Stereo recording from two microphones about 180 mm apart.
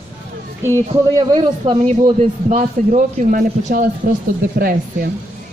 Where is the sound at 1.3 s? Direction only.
40° right (ahead or behind); by 5.0 s 55° right (ahead or behind).